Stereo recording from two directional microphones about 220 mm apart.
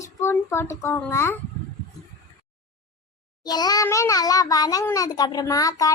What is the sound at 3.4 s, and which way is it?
A child's voice, 20° left (ahead or behind).